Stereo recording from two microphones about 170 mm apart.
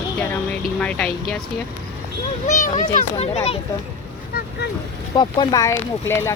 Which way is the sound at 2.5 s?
45° left (ahead or behind).